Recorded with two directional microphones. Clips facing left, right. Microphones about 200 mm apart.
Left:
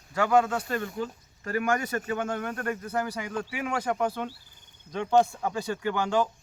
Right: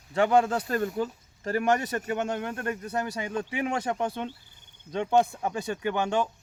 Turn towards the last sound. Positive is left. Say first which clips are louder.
# even
turn(degrees=-20)  # may be behind; listen again after turning